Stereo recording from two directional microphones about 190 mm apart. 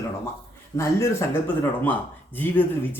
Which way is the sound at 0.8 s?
15° left (ahead or behind).